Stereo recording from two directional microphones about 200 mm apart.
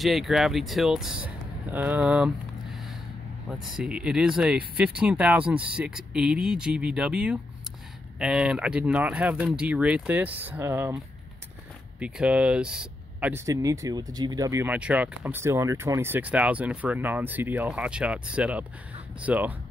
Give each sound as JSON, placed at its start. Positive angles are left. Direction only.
{"t": 0.0, "sound": "speech", "side_deg": 0}
{"t": 3.4, "sound": "speech", "side_deg": -5}
{"t": 12.0, "sound": "speech", "side_deg": -5}